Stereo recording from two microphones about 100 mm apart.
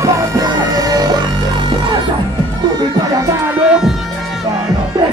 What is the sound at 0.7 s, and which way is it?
Music, 40° right (ahead or behind).